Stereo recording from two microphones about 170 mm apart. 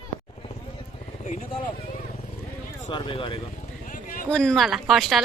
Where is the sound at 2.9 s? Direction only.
30° left (ahead or behind).